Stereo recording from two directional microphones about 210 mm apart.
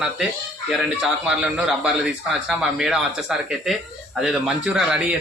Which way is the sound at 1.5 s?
5° right (ahead or behind).